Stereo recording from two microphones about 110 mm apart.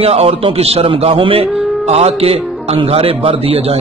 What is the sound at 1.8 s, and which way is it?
A man's voice, 70° right (ahead or behind).